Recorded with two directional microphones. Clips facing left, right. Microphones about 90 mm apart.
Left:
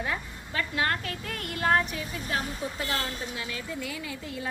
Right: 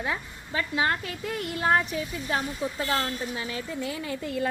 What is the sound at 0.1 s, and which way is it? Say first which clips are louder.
A woman's voice: right 2 dB; 15° right (ahead or behind).